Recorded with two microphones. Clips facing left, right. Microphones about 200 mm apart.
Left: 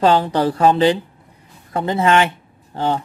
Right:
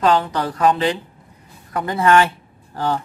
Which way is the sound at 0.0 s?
30° left (ahead or behind).